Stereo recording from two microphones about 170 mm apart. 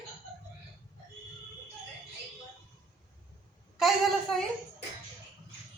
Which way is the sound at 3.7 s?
Centre (ahead or behind).